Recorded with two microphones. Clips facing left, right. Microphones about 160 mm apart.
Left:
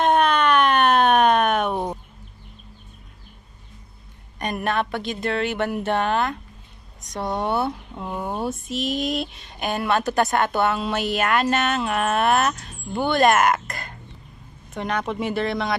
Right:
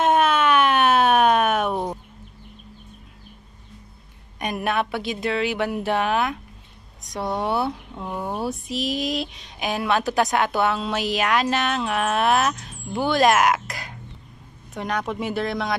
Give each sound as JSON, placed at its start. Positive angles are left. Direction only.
{"t": 0.0, "sound": "siren", "side_deg": -5}
{"t": 4.4, "sound": "speech", "side_deg": -5}